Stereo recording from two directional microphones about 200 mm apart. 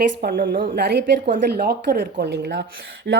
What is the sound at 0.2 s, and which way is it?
Speech, 45° right (ahead or behind).